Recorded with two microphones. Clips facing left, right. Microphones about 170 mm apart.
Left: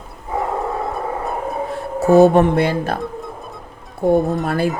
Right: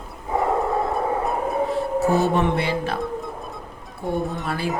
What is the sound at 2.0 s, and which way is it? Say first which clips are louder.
Speech: left 11 dB; 50° left (ahead or behind).